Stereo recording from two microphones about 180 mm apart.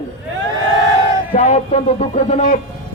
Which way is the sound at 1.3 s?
40° left (ahead or behind).